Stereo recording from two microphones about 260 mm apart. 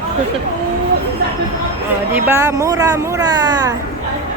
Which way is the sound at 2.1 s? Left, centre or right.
Centre.